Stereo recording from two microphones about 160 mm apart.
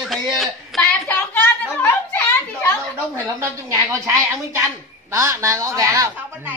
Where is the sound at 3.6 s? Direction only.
20° right (ahead or behind).